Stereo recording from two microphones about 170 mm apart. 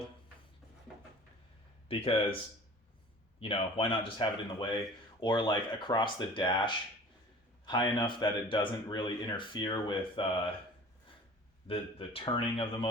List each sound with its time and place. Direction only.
1.9 s speech: 30° left (ahead or behind)
3.4 s speech: 30° left (ahead or behind)
11.7 s speech: 30° left (ahead or behind)